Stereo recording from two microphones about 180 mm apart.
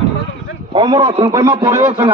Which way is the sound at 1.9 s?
35° right (ahead or behind).